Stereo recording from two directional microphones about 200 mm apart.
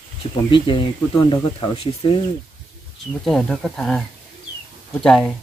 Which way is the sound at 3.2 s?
Centre (ahead or behind).